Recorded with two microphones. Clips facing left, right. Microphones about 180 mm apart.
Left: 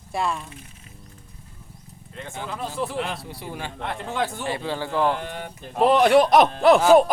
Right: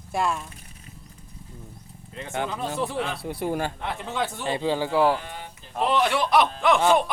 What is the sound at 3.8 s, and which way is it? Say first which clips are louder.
Speech: left 2 dB; centre (ahead or behind).